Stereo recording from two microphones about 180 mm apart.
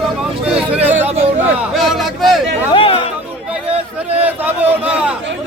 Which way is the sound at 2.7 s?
30° left (ahead or behind).